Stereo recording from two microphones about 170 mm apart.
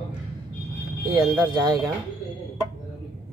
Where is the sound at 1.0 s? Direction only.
25° right (ahead or behind).